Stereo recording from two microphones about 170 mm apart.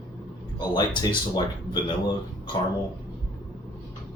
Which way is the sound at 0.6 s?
25° left (ahead or behind).